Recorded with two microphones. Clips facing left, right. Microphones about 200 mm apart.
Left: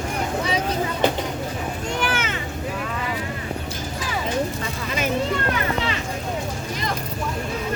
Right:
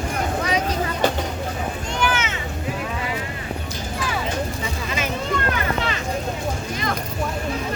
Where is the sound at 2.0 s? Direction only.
55° left (ahead or behind).